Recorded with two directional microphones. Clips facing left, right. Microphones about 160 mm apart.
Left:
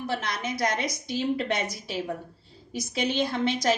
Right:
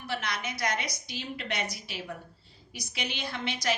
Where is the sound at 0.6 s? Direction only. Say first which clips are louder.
Left 5 dB; 45° left (ahead or behind).